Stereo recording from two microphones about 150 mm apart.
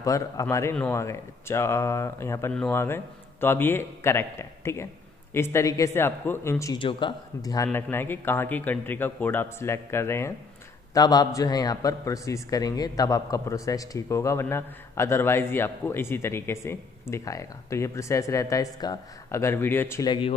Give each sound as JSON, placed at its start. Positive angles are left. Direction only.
{"t": 0.0, "sound": "speech", "side_deg": 20}
{"t": 6.8, "sound": "a man's voice", "side_deg": 35}
{"t": 20.1, "sound": "speech", "side_deg": 35}